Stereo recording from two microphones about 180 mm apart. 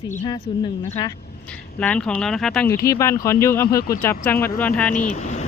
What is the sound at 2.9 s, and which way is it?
Speech, 15° left (ahead or behind).